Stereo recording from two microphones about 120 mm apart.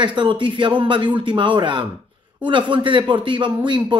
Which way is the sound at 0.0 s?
40° right (ahead or behind).